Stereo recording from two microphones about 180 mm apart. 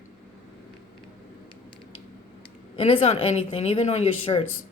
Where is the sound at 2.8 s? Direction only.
30° left (ahead or behind).